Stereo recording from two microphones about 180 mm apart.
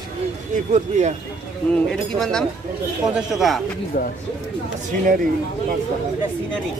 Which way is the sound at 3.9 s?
50° left (ahead or behind).